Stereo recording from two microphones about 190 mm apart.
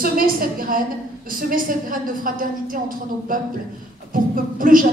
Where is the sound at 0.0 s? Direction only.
50° right (ahead or behind).